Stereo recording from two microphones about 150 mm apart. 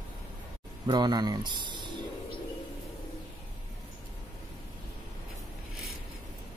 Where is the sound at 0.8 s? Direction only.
30° right (ahead or behind).